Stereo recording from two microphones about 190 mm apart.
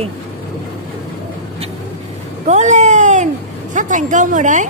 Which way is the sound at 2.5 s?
40° right (ahead or behind).